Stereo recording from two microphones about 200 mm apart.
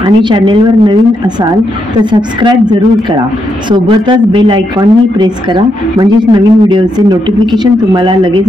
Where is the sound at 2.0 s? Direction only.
20° right (ahead or behind).